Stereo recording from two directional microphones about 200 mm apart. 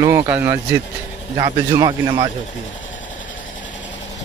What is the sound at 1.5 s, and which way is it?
Speech, 25° right (ahead or behind).